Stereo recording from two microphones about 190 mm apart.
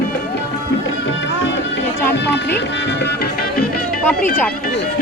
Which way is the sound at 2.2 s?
65° left (ahead or behind).